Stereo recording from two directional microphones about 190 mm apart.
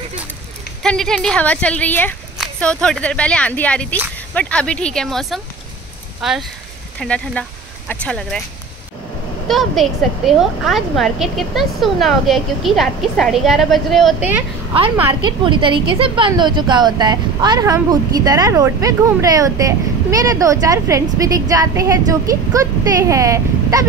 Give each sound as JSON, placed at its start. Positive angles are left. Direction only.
{"t": 0.8, "sound": "a woman's voice", "side_deg": 5}
{"t": 9.5, "sound": "a woman's voice", "side_deg": 0}
{"t": 15.2, "sound": "a woman's voice", "side_deg": -25}